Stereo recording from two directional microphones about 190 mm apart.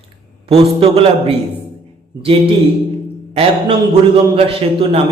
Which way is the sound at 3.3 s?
30° right (ahead or behind).